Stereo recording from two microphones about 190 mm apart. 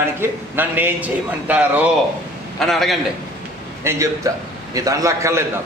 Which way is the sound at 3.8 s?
15° right (ahead or behind).